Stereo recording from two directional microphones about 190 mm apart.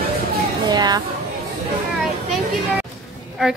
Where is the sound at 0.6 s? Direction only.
20° right (ahead or behind).